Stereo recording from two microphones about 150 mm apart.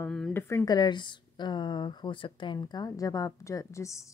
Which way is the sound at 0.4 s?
15° left (ahead or behind).